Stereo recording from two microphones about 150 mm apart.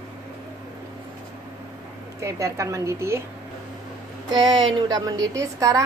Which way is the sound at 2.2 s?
20° right (ahead or behind).